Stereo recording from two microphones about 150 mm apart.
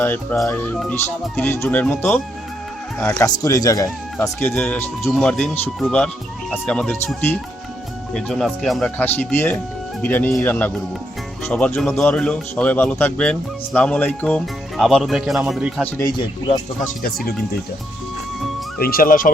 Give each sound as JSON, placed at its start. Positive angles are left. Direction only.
{"t": 0.0, "sound": "speech", "side_deg": 10}
{"t": 5.0, "sound": "speech", "side_deg": 0}
{"t": 15.8, "sound": "speech", "side_deg": 20}
{"t": 18.8, "sound": "speech", "side_deg": 80}